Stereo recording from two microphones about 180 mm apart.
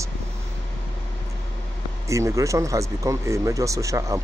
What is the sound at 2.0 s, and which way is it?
Speech, 15° right (ahead or behind).